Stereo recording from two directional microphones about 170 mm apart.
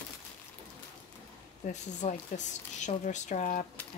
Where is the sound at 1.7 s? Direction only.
45° left (ahead or behind).